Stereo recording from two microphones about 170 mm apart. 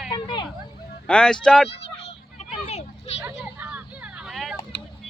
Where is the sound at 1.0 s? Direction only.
5° left (ahead or behind).